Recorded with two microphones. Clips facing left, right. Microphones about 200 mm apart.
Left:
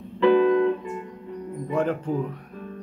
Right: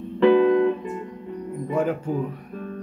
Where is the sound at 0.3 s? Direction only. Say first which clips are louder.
Right 1 dB; 15° right (ahead or behind).